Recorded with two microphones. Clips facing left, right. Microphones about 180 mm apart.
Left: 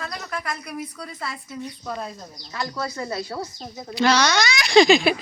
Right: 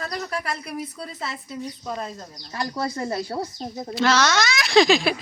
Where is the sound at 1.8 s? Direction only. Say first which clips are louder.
Right 1 dB; 5° right (ahead or behind).